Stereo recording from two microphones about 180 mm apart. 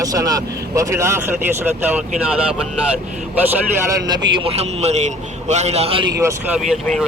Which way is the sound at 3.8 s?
20° right (ahead or behind).